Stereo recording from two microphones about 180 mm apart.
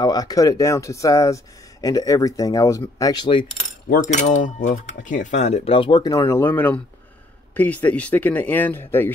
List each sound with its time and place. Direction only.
0.0 s speech: 20° left (ahead or behind)
4.1 s speech: 45° left (ahead or behind); by 9.1 s 10° left (ahead or behind)